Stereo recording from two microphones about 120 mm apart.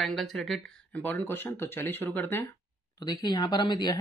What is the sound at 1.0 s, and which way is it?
Speech, 15° left (ahead or behind).